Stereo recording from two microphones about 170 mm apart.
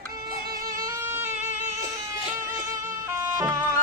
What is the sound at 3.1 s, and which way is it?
Music, 15° right (ahead or behind).